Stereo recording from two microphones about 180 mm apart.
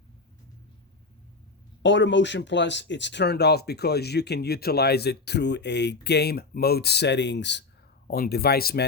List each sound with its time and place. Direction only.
1.8 s speech: 90° left
8.0 s speech: 55° left (ahead or behind)